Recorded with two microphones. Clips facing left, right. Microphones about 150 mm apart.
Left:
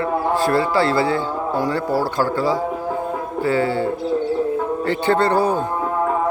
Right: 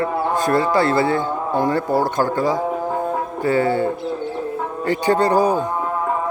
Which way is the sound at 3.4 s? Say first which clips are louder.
Right 1 dB; 50° right (ahead or behind).